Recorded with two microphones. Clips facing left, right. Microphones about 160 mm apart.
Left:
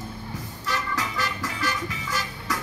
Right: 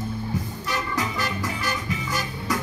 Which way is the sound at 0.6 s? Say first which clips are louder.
Left 1 dB; 15° right (ahead or behind).